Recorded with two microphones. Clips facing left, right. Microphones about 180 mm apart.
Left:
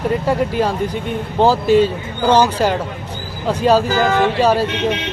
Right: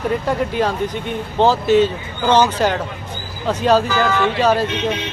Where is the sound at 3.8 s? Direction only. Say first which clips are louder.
Left 2 dB; 50° left (ahead or behind).